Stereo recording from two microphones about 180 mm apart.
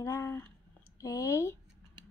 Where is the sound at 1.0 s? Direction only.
20° left (ahead or behind).